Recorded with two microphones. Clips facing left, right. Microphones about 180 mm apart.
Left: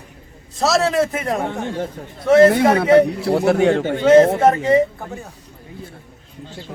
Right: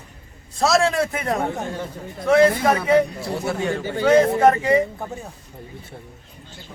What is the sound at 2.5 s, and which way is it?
Speech, 70° left (ahead or behind).